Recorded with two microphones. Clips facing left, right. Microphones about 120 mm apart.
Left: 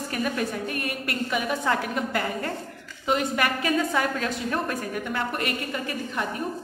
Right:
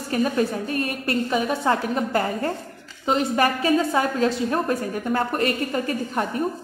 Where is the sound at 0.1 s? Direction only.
30° right (ahead or behind).